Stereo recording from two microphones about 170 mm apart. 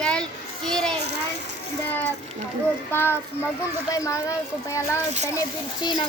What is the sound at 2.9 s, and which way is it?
A child's voice, 15° left (ahead or behind).